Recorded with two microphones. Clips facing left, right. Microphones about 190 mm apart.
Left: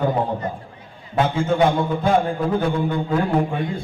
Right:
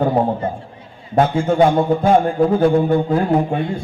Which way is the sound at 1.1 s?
30° right (ahead or behind).